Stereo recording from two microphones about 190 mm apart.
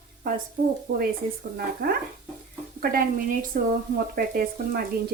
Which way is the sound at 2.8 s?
50° right (ahead or behind).